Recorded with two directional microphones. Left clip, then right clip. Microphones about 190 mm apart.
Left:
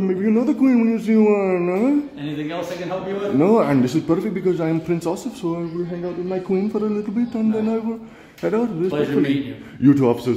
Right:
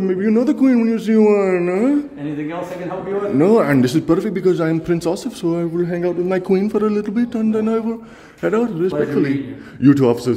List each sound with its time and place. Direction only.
0.0 s speech: 5° right (ahead or behind)
3.3 s a man's voice: 15° right (ahead or behind)
8.5 s a man's voice: 15° right (ahead or behind)